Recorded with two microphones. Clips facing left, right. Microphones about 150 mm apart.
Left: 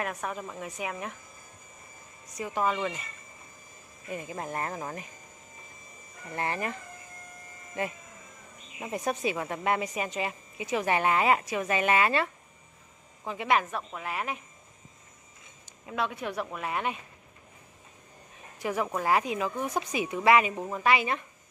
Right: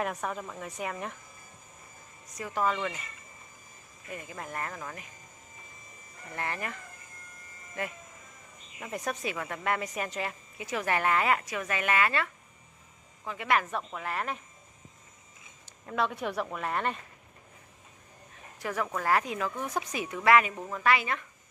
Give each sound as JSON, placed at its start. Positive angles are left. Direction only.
{"t": 0.0, "sound": "speech", "side_deg": 0}
{"t": 2.3, "sound": "a woman's voice", "side_deg": 20}
{"t": 4.1, "sound": "speech", "side_deg": 25}
{"t": 6.3, "sound": "speech", "side_deg": 25}
{"t": 8.7, "sound": "speech", "side_deg": 20}
{"t": 13.7, "sound": "a woman's voice", "side_deg": 5}
{"t": 15.8, "sound": "speech", "side_deg": 5}
{"t": 18.6, "sound": "a woman's voice", "side_deg": 15}